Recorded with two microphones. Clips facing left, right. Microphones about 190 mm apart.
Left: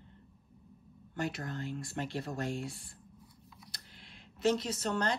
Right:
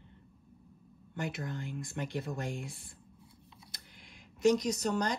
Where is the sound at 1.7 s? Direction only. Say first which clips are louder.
Left 1 dB; 15° right (ahead or behind).